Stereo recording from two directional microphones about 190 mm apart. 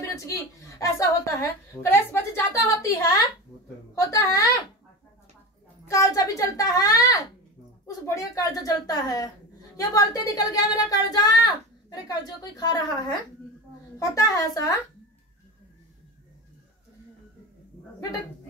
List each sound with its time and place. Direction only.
0.1 s a woman's voice: 15° left (ahead or behind)
5.9 s a child's voice: 15° left (ahead or behind)